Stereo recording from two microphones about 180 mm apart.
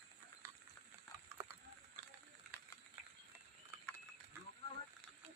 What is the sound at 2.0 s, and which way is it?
Frying, 45° right (ahead or behind).